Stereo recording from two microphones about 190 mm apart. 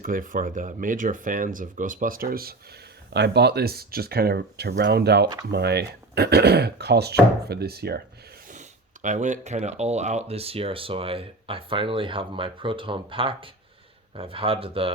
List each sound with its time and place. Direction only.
0.0 s speech: 45° right (ahead or behind)
8.4 s speech: 40° right (ahead or behind)